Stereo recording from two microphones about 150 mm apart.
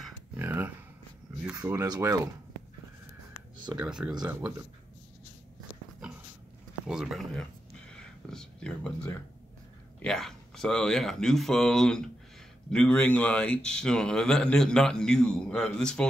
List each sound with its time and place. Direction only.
0.3 s a sound: 15° right (ahead or behind)
1.4 s speech: 15° right (ahead or behind)
3.7 s speech: 5° right (ahead or behind)
6.9 s speech: 5° right (ahead or behind)
8.0 s whispering: 5° left (ahead or behind)
10.0 s speech: 5° left (ahead or behind)